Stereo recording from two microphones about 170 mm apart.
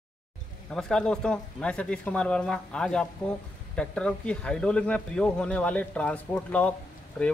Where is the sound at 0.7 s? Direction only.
5° left (ahead or behind).